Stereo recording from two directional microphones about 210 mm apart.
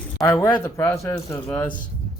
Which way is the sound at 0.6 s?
10° left (ahead or behind).